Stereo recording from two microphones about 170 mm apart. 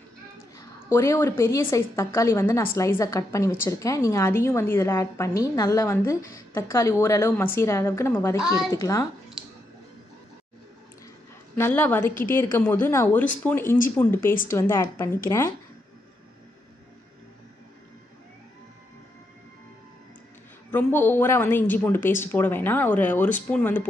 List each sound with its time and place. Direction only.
0.6 s a woman's voice: 15° left (ahead or behind)
11.5 s a woman's voice: 10° left (ahead or behind)
20.7 s a woman's voice: 10° left (ahead or behind)